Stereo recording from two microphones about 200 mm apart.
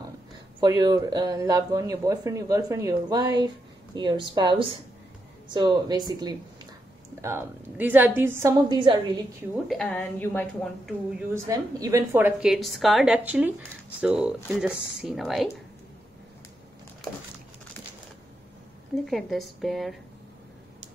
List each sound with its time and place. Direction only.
0.6 s speech: 20° right (ahead or behind)
9.5 s a woman's voice: centre (ahead or behind)
11.1 s speech: 15° right (ahead or behind)
19.0 s speech: centre (ahead or behind)